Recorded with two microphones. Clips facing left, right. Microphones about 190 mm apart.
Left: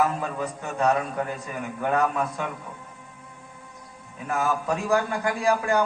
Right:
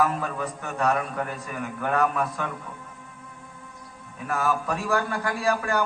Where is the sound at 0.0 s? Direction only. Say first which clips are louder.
Even; 20° left (ahead or behind).